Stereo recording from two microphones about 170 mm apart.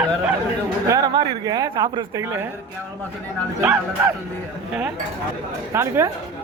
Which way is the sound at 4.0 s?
10° right (ahead or behind).